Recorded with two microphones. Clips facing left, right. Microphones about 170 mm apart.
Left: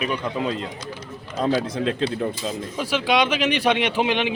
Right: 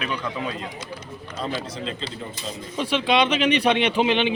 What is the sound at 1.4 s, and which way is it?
Speech, 55° left (ahead or behind).